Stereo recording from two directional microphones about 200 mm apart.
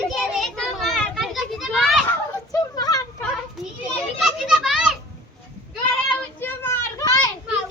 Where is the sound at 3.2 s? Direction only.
Centre (ahead or behind).